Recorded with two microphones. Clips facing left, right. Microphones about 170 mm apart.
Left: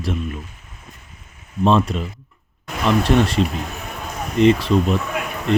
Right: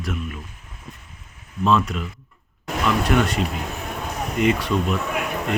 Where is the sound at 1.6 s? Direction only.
30° left (ahead or behind).